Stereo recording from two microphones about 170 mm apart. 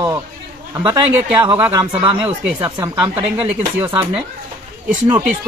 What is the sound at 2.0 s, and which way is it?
Speech, 30° right (ahead or behind).